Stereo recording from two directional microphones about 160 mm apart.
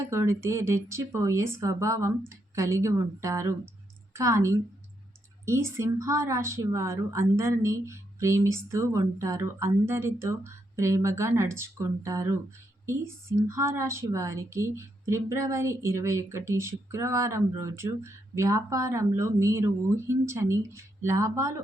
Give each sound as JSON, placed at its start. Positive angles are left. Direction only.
{"t": 0.0, "sound": "a woman's voice", "side_deg": -15}